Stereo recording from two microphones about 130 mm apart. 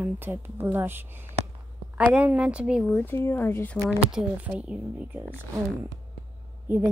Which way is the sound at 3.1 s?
15° left (ahead or behind).